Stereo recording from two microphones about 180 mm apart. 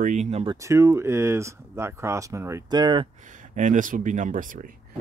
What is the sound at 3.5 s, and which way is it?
Speech, 45° right (ahead or behind).